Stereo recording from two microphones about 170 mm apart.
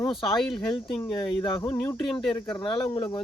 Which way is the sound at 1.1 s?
30° left (ahead or behind).